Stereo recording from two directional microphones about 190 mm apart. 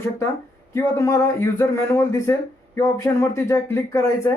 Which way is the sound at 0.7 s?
15° left (ahead or behind).